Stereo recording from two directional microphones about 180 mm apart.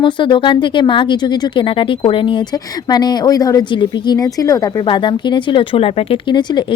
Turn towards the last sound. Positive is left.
turn(degrees=25)  # may be behind; listen again after turning